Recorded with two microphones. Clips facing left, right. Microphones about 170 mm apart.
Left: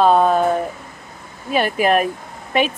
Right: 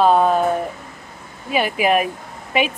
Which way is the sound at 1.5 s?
10° right (ahead or behind).